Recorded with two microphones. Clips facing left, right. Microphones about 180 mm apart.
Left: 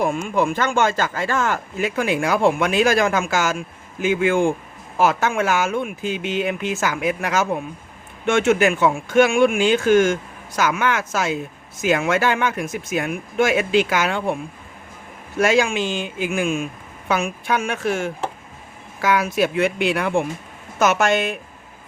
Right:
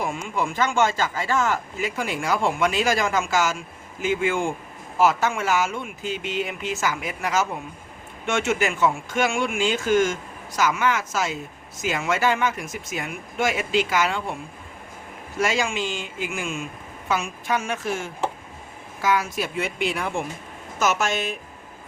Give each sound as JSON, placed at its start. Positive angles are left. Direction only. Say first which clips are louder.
{"t": 0.0, "sound": "speech", "louder": "left 6 dB", "side_deg": 60}
{"t": 15.4, "sound": "speech", "louder": "left 6 dB", "side_deg": 60}